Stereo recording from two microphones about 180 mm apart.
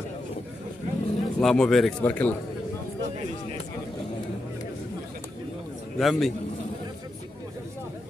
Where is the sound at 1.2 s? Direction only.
Centre (ahead or behind).